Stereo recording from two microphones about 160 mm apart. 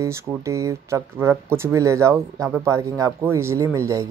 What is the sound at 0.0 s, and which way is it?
Speech, 15° right (ahead or behind).